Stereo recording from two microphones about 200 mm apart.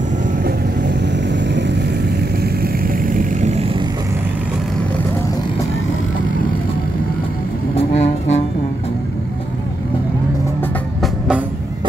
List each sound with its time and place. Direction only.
0.4 s vehicle: 60° right (ahead or behind)
2.6 s vehicle: 45° right (ahead or behind)
7.7 s music: 30° left (ahead or behind)
11.0 s music: 5° right (ahead or behind)